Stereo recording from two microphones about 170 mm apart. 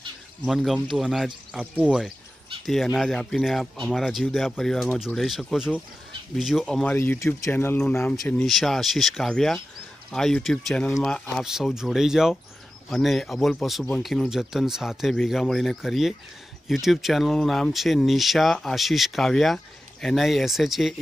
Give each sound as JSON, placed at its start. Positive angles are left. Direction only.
{"t": 0.5, "sound": "speech", "side_deg": 0}